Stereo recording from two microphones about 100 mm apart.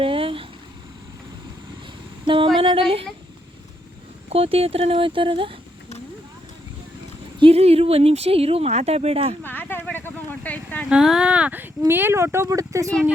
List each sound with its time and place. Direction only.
0.0 s a sound: 65° right (ahead or behind)
2.2 s female singing: 60° right (ahead or behind)
4.3 s speech: 75° right (ahead or behind); by 5.5 s 60° right (ahead or behind)
7.3 s speech: 75° right (ahead or behind)
9.4 s a sound: 20° left (ahead or behind)
10.8 s speech: 5° right (ahead or behind); by 12.9 s 35° right (ahead or behind)